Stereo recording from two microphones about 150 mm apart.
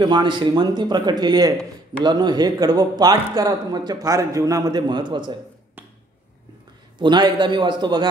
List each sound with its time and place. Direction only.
0.0 s speech: 30° right (ahead or behind)
7.0 s a man's voice: 30° right (ahead or behind)